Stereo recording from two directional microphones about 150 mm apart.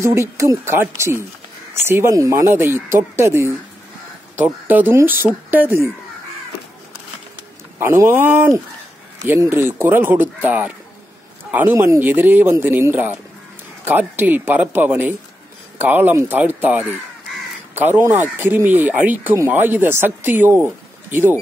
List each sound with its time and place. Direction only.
0.0 s speech: 20° right (ahead or behind)
7.8 s speech: 15° right (ahead or behind)